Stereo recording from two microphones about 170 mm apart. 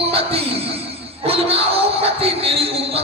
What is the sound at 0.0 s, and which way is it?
Music, 35° right (ahead or behind).